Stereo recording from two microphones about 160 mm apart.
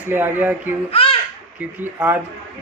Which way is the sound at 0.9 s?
35° left (ahead or behind).